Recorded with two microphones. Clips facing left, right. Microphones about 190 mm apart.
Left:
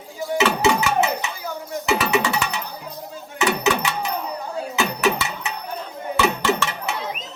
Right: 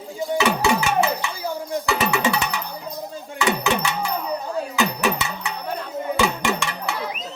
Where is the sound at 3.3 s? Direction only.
20° left (ahead or behind).